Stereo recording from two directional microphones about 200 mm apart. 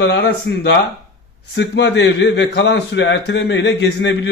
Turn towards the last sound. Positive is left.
turn(degrees=60)  # may be behind; listen again after turning